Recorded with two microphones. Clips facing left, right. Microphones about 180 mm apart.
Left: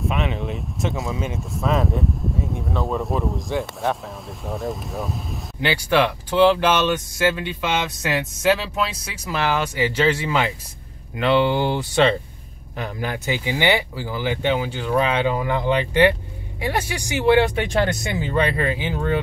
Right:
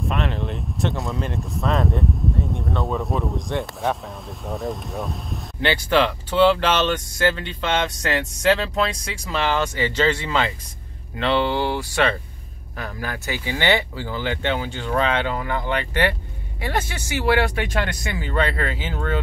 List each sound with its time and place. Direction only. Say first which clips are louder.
0.0 s speech: left 1 dB; centre (ahead or behind)